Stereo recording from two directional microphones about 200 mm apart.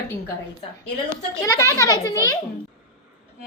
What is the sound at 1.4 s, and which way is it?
Speech, 15° left (ahead or behind).